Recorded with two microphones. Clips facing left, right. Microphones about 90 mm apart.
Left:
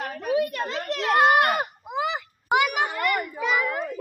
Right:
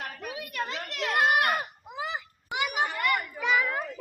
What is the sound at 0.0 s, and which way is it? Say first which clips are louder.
Children playing: left 13 dB; 30° left (ahead or behind).